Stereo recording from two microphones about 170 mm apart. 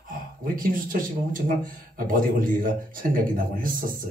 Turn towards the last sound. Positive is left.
turn(degrees=-55)  # may be behind; listen again after turning